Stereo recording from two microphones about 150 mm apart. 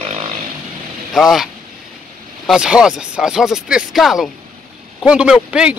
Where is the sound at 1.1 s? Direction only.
Centre (ahead or behind).